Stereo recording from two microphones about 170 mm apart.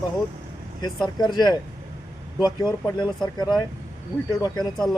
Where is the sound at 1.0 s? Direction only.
25° left (ahead or behind).